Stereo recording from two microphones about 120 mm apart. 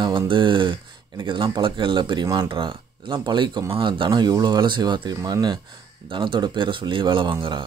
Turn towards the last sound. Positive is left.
turn(degrees=-40)  # may be behind; listen again after turning